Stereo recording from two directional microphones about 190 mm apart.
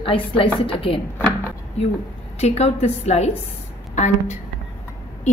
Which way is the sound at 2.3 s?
35° left (ahead or behind).